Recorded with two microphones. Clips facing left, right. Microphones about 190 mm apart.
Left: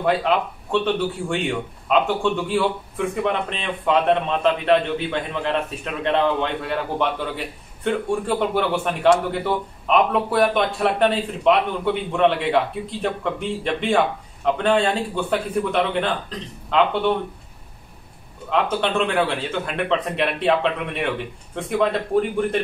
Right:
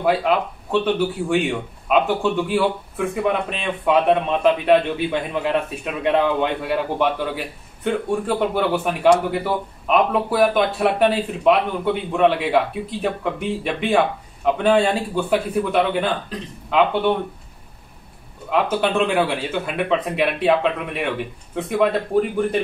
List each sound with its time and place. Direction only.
0.7 s a man's voice: 5° right (ahead or behind)
18.5 s a man's voice: 5° right (ahead or behind)